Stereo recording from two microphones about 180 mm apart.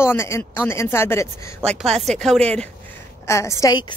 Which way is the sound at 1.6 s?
5° left (ahead or behind).